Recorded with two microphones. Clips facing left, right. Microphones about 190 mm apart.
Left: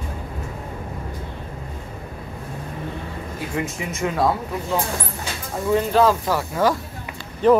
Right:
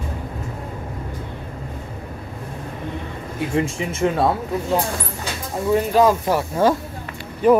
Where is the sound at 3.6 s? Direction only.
30° right (ahead or behind).